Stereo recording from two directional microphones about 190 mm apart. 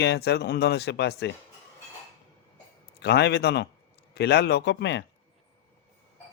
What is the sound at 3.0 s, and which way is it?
A man's voice, 60° left (ahead or behind).